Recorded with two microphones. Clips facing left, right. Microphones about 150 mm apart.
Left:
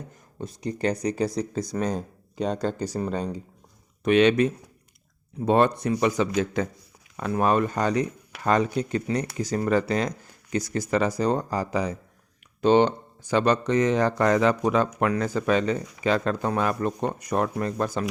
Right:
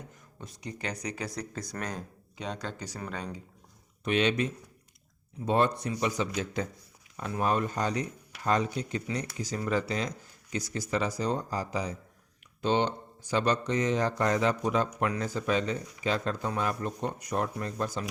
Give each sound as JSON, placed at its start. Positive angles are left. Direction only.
{"t": 0.3, "sound": "speech", "side_deg": 35}
{"t": 4.0, "sound": "speech", "side_deg": 65}